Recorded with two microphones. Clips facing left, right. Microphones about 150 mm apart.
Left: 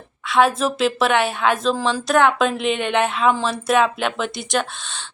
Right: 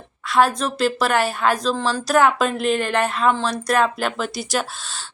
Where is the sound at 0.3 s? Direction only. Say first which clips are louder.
Left 1 dB; centre (ahead or behind).